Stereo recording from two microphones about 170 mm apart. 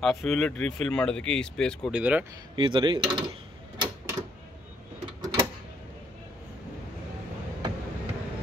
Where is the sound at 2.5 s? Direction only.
30° right (ahead or behind).